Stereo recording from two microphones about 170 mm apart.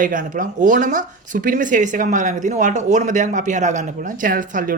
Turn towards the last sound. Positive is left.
turn(degrees=-50)  # may be behind; listen again after turning